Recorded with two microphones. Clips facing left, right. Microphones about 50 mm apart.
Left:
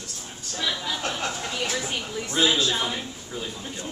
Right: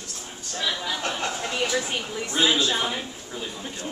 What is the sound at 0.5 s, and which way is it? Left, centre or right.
Speech, centre.